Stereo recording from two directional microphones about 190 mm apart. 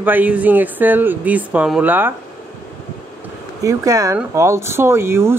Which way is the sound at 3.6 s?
20° right (ahead or behind).